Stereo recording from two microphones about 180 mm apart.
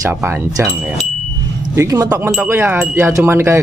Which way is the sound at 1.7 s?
15° right (ahead or behind).